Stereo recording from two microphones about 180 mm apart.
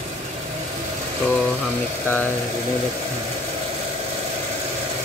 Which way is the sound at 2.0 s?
10° left (ahead or behind).